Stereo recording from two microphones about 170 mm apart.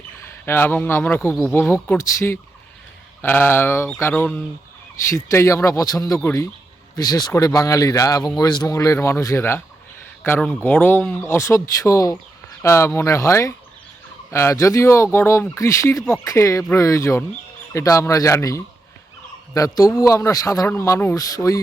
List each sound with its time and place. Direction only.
0.2 s a man's voice: 15° left (ahead or behind)